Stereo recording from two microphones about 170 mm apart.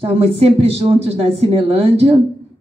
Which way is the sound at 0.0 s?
35° right (ahead or behind).